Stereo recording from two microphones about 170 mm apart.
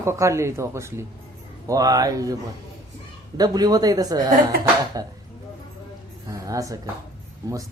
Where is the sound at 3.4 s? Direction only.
20° right (ahead or behind).